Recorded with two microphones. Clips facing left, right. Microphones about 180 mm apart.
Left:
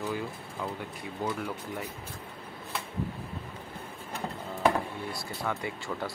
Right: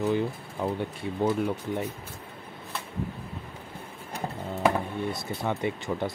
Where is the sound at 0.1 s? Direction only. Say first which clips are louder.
Right 7 dB; 30° right (ahead or behind).